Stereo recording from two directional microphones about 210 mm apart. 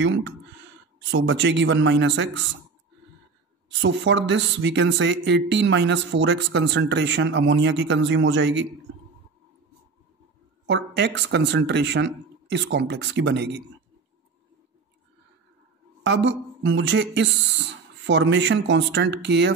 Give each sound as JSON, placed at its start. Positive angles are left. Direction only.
{"t": 0.0, "sound": "speech", "side_deg": -60}
{"t": 3.6, "sound": "speech", "side_deg": -60}
{"t": 10.7, "sound": "speech", "side_deg": -55}
{"t": 16.0, "sound": "speech", "side_deg": -60}